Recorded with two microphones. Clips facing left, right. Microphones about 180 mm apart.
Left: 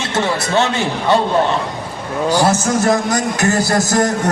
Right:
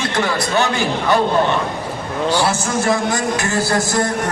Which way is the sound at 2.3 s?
40° left (ahead or behind).